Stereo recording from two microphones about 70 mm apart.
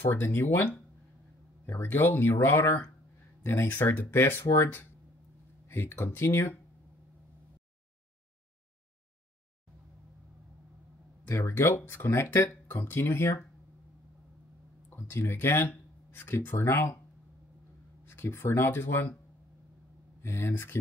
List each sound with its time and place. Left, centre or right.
0.2 s speech: left
11.2 s speech: left
12.8 s speech: left
14.9 s speech: left
18.0 s speech: left
20.2 s speech: left